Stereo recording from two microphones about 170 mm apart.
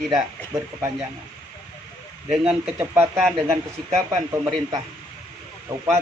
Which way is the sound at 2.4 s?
10° right (ahead or behind).